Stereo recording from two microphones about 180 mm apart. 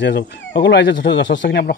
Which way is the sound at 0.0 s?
80° left.